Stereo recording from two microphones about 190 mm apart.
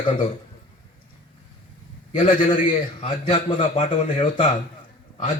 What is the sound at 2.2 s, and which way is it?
A man's voice, 25° left (ahead or behind).